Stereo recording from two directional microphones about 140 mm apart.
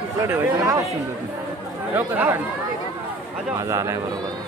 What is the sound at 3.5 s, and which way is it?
Speech, 20° right (ahead or behind).